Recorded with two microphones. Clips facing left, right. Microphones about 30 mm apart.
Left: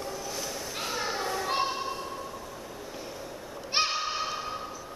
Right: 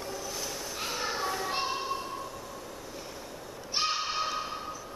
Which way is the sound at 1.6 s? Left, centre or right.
Centre.